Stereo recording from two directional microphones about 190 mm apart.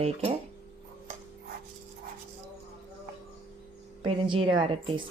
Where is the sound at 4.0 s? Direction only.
25° right (ahead or behind).